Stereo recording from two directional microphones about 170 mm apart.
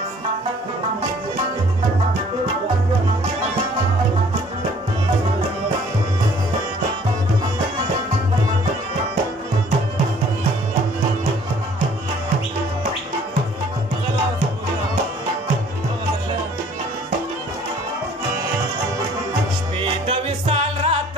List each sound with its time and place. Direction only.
20.1 s music: 35° right (ahead or behind)